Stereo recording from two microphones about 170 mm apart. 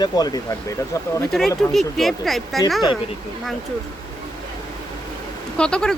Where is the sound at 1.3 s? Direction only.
Centre (ahead or behind).